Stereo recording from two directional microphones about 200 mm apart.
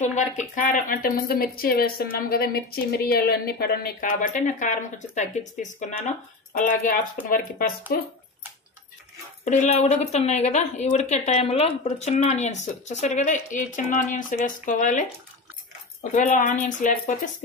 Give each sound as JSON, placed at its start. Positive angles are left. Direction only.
{"t": 0.0, "sound": "speech", "side_deg": 35}
{"t": 9.4, "sound": "a woman's voice", "side_deg": 35}